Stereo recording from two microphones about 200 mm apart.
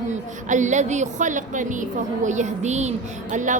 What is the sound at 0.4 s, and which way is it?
A woman's voice, 35° right (ahead or behind).